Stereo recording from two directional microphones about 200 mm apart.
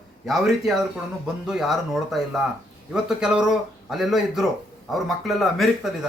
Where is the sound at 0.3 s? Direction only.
Centre (ahead or behind).